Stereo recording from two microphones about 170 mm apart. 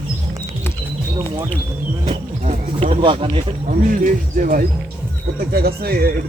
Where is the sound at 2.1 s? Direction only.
40° right (ahead or behind).